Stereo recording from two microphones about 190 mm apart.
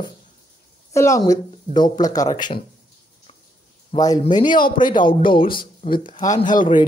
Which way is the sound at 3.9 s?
20° left (ahead or behind).